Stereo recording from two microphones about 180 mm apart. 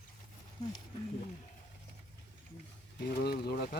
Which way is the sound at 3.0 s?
60° left (ahead or behind).